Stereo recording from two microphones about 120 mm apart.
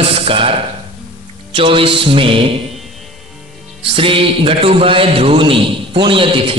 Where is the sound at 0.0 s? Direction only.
55° right (ahead or behind).